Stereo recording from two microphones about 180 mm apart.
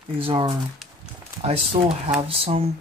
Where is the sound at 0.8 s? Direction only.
Centre (ahead or behind).